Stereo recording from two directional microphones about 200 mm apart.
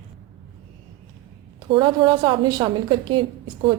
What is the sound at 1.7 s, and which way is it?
A woman's voice, 25° right (ahead or behind).